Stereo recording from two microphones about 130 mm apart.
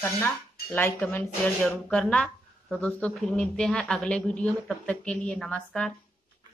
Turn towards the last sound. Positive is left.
turn(degrees=10)  # may be behind; listen again after turning